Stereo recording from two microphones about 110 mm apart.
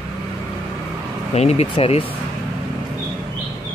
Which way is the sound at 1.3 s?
75° left (ahead or behind).